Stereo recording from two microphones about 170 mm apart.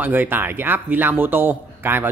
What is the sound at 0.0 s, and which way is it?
A man's voice, 10° right (ahead or behind).